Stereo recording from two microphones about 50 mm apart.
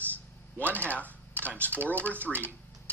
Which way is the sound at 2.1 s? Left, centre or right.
Right.